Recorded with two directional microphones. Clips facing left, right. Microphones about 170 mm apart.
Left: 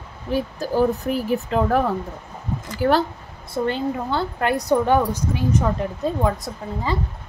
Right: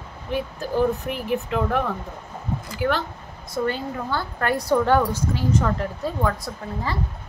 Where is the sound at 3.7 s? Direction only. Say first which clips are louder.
Left 5 dB; 20° left (ahead or behind).